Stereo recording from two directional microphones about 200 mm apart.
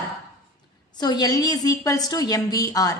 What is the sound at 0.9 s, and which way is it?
A woman's voice, 20° left (ahead or behind).